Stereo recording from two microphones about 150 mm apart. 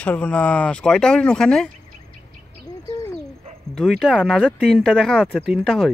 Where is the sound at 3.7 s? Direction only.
5° left (ahead or behind).